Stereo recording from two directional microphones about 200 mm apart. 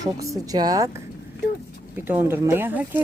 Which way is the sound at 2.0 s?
10° right (ahead or behind).